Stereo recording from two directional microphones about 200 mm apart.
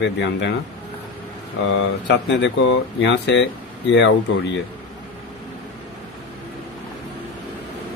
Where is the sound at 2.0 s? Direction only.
60° left (ahead or behind).